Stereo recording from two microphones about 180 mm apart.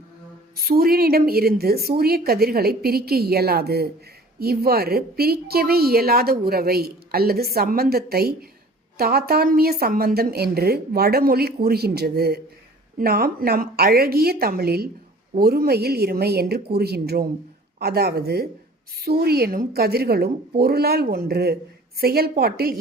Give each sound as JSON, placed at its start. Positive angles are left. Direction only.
{"t": 0.5, "sound": "a woman's voice", "side_deg": -55}